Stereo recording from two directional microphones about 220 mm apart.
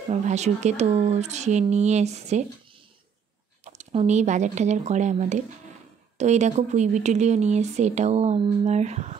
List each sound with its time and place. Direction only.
0.1 s speech: 30° right (ahead or behind)
3.6 s speech: 30° right (ahead or behind)